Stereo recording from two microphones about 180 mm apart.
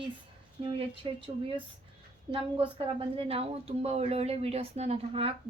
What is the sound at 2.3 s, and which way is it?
A woman's voice, 30° right (ahead or behind).